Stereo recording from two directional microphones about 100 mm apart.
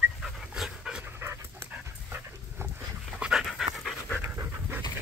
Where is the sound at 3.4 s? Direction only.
Centre (ahead or behind).